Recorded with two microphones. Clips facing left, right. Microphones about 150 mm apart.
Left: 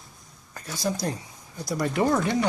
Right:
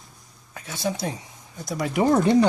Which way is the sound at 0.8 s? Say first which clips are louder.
Right 1 dB; centre (ahead or behind).